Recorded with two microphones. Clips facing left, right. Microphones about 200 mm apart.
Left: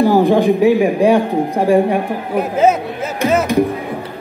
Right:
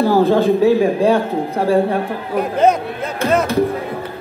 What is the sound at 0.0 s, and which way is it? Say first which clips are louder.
Speech: left 2 dB; 15° left (ahead or behind).